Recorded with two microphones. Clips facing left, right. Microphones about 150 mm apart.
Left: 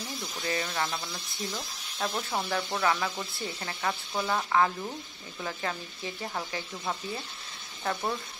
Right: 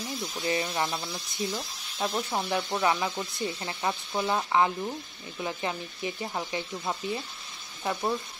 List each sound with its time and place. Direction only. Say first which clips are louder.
0.4 s speech: right 3 dB; 15° right (ahead or behind)
2.5 s speech: right 2 dB; 15° right (ahead or behind)